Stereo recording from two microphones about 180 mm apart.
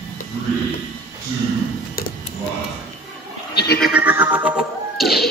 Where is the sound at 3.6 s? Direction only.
60° left (ahead or behind).